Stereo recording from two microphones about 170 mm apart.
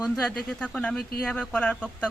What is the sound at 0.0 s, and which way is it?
Speech, centre (ahead or behind).